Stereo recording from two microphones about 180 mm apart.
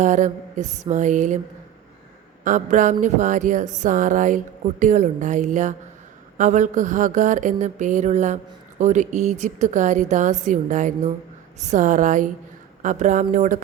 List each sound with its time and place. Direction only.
0.0 s speech: 45° right (ahead or behind)
2.4 s speech: 45° right (ahead or behind)